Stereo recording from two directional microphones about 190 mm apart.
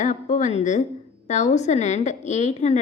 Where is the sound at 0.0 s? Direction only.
40° left (ahead or behind).